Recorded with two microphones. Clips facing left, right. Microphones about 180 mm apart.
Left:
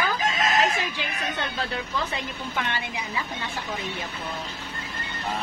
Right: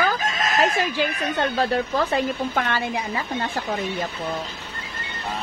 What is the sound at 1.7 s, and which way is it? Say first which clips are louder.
A woman's voice: right 8 dB; 50° right (ahead or behind).